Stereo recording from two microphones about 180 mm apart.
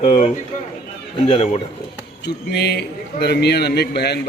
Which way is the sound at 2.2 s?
65° left (ahead or behind).